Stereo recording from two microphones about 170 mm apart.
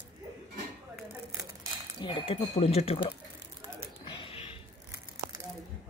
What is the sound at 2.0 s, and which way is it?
Speech, 30° left (ahead or behind).